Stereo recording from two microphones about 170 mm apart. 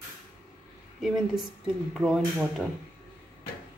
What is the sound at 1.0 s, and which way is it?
Speech, centre (ahead or behind).